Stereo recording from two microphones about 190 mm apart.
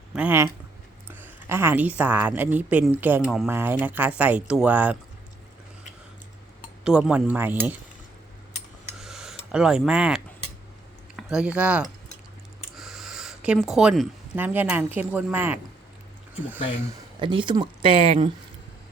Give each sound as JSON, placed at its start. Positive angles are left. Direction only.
{"t": 0.1, "sound": "a woman's voice", "side_deg": -10}
{"t": 6.8, "sound": "speech", "side_deg": -5}
{"t": 9.0, "sound": "a sound", "side_deg": 0}
{"t": 11.2, "sound": "speech", "side_deg": -5}
{"t": 12.7, "sound": "a sound", "side_deg": 0}
{"t": 14.3, "sound": "speech", "side_deg": -10}
{"t": 17.2, "sound": "speech", "side_deg": -25}